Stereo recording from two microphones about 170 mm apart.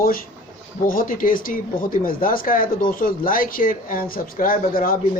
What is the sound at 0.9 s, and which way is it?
Speech, 55° left (ahead or behind).